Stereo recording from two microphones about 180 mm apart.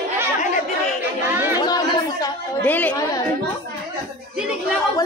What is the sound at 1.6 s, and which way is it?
Speech, 20° left (ahead or behind).